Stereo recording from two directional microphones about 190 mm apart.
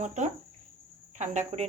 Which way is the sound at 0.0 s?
40° right (ahead or behind).